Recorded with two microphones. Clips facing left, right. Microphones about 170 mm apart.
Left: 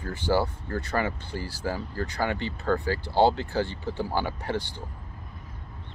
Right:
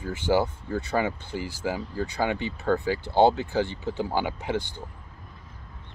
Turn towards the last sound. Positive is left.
turn(degrees=-15)  # may be behind; listen again after turning